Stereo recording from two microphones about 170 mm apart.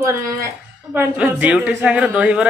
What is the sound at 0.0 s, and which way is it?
A woman's voice, 15° right (ahead or behind).